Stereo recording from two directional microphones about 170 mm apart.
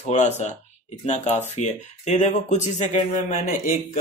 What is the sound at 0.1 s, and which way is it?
Speech, 45° left (ahead or behind).